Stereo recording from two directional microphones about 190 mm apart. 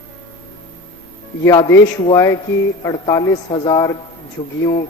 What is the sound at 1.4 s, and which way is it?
A man's voice, 20° left (ahead or behind).